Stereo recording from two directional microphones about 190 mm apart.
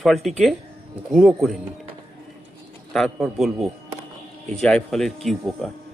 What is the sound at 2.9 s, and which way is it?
Speech, centre (ahead or behind).